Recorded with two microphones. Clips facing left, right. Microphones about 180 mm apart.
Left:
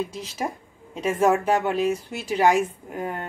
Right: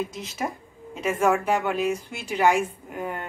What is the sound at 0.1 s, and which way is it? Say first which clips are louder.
A woman's voice: left 1 dB; 30° left (ahead or behind).